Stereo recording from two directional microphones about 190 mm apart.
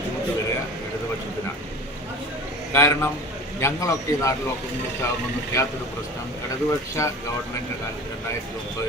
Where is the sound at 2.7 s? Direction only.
15° left (ahead or behind).